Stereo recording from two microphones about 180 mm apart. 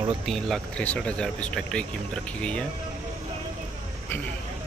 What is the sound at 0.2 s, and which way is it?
Speech, centre (ahead or behind).